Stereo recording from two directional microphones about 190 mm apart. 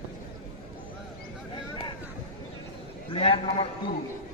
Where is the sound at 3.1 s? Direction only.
30° left (ahead or behind).